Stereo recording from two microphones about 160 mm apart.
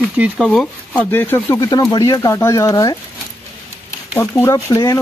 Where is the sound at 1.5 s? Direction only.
25° left (ahead or behind).